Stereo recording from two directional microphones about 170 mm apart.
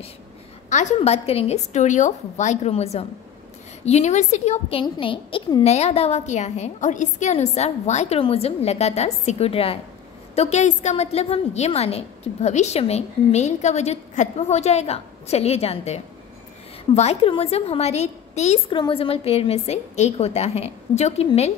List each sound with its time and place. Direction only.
0.7 s a woman's voice: 45° left (ahead or behind)
18.7 s a woman's voice: 30° left (ahead or behind)